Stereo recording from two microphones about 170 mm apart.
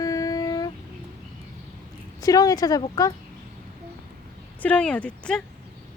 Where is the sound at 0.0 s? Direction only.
20° left (ahead or behind).